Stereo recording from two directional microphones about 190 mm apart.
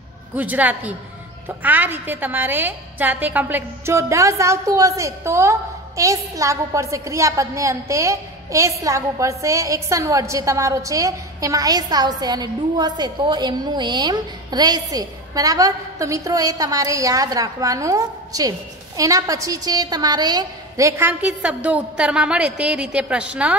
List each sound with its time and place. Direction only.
0.4 s a woman's voice: 10° right (ahead or behind)